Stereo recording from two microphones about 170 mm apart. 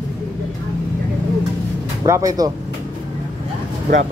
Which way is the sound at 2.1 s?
20° right (ahead or behind).